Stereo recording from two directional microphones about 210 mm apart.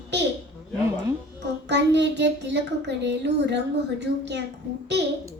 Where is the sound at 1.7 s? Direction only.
55° right (ahead or behind).